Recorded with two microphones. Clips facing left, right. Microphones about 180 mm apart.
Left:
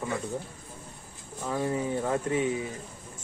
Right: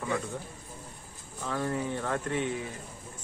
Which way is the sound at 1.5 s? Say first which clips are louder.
Left 3 dB; 15° left (ahead or behind).